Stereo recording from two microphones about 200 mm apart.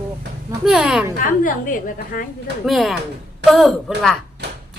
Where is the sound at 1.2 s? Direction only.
45° left (ahead or behind).